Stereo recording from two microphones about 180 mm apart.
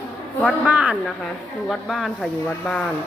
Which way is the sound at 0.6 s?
10° right (ahead or behind).